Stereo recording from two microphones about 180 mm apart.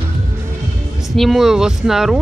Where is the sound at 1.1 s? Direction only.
Centre (ahead or behind).